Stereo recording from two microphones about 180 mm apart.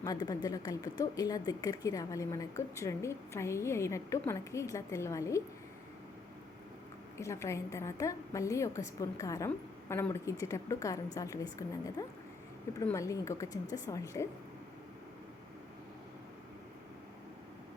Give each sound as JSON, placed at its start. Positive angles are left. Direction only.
{"t": 0.0, "sound": "a woman's voice", "side_deg": 20}
{"t": 7.2, "sound": "a woman's voice", "side_deg": 15}